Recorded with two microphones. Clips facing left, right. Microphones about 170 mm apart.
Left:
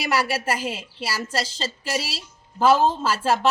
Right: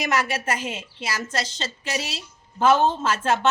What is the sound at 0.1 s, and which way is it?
Speech, 35° left (ahead or behind).